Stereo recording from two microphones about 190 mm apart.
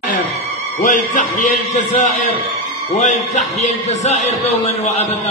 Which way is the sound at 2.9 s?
40° left (ahead or behind).